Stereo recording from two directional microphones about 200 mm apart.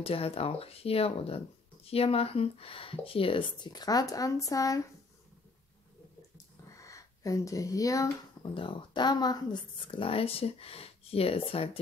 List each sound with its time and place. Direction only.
0.0 s speech: 30° left (ahead or behind)
6.7 s speech: 15° left (ahead or behind)